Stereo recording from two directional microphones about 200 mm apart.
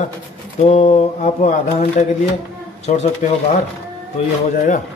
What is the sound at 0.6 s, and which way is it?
Speech, 30° left (ahead or behind).